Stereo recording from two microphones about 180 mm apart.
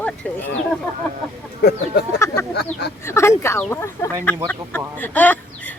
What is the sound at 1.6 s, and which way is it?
Speech, 65° left (ahead or behind).